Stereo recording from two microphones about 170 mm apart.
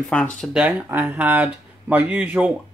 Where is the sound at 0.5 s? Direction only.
10° right (ahead or behind).